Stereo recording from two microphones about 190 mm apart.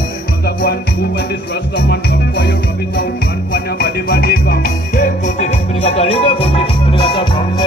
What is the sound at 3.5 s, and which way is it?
Music, 55° left (ahead or behind).